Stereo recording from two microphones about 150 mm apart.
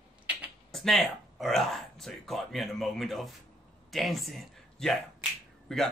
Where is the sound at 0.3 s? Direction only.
10° right (ahead or behind).